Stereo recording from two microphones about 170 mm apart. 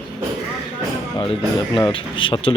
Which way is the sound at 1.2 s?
30° left (ahead or behind).